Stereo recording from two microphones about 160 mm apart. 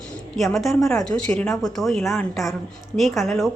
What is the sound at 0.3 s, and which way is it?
A woman's voice, centre (ahead or behind).